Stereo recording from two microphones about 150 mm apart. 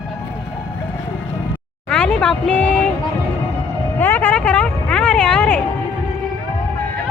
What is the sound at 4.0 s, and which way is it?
Speech, 15° left (ahead or behind).